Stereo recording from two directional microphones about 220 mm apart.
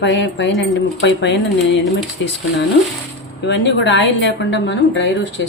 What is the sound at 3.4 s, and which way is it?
A woman's voice, 50° left (ahead or behind).